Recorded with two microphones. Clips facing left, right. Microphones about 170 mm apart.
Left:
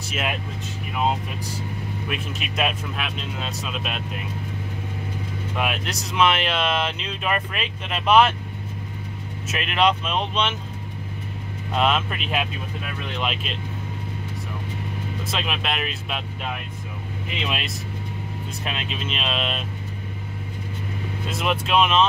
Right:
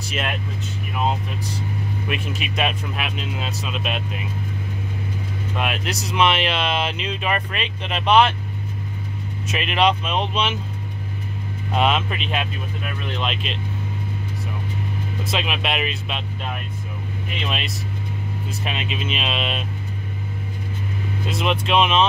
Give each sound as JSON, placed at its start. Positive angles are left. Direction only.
{"t": 2.0, "sound": "speech", "side_deg": 0}
{"t": 5.6, "sound": "speech", "side_deg": 0}
{"t": 9.5, "sound": "speech", "side_deg": 0}
{"t": 11.7, "sound": "speech", "side_deg": 0}
{"t": 15.3, "sound": "speech", "side_deg": -5}
{"t": 18.6, "sound": "speech", "side_deg": -5}
{"t": 21.3, "sound": "speech", "side_deg": 5}